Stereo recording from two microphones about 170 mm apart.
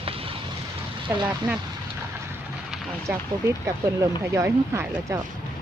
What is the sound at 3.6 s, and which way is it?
Speech, 15° right (ahead or behind).